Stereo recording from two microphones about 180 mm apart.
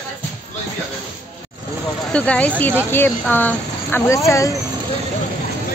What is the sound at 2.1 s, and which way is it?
Speech, 5° left (ahead or behind).